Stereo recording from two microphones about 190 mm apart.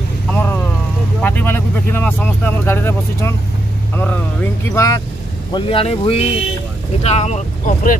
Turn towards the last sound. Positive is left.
turn(degrees=40)  # may be behind; listen again after turning